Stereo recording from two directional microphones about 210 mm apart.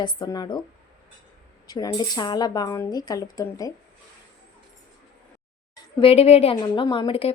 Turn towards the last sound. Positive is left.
turn(degrees=25)  # may be behind; listen again after turning